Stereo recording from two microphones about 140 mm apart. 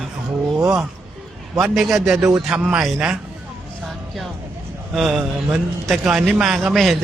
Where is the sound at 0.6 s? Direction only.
20° right (ahead or behind).